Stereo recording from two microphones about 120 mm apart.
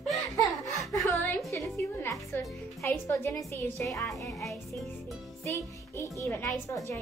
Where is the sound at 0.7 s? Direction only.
25° left (ahead or behind).